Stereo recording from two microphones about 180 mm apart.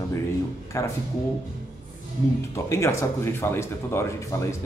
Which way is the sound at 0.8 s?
15° left (ahead or behind).